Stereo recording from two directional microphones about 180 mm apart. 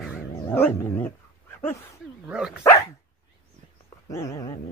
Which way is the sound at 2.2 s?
5° right (ahead or behind).